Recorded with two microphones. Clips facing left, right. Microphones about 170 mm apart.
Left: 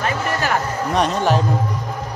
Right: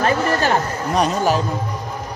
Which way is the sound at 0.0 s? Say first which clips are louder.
Right 4 dB; 30° right (ahead or behind).